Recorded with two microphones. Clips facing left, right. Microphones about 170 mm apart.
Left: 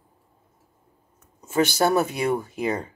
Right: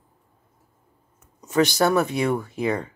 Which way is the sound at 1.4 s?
25° left (ahead or behind).